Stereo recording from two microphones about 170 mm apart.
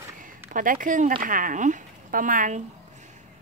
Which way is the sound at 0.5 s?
50° right (ahead or behind).